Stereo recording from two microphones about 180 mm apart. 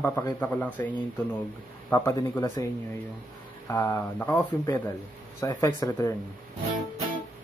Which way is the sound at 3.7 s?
15° left (ahead or behind).